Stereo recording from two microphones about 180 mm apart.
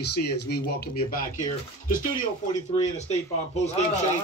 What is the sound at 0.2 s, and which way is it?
Speech, 60° left (ahead or behind).